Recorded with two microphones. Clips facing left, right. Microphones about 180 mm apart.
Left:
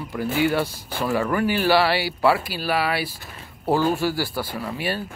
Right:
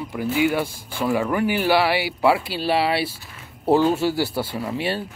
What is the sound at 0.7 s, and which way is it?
Speech, 50° right (ahead or behind).